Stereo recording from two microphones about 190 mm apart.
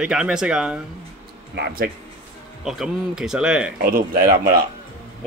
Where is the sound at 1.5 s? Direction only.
55° right (ahead or behind).